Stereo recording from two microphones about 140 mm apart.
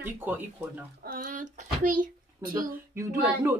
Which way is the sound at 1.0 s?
80° right.